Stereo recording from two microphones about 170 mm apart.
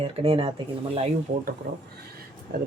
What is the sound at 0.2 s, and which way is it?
Speech, 35° right (ahead or behind).